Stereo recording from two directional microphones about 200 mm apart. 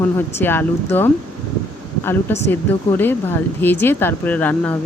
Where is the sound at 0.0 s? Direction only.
10° left (ahead or behind).